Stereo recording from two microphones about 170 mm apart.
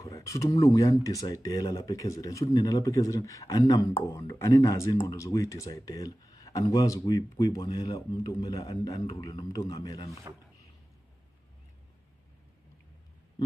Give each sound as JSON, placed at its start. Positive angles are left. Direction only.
{"t": 0.0, "sound": "speech", "side_deg": 20}
{"t": 10.3, "sound": "speech", "side_deg": -20}